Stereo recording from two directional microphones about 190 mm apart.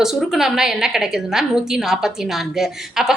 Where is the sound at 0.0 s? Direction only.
Centre (ahead or behind).